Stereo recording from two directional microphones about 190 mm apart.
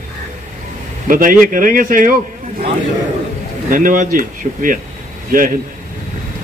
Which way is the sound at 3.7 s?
45° right (ahead or behind).